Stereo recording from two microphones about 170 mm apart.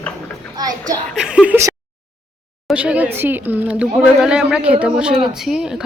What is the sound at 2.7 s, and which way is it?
A child's voice, 5° right (ahead or behind).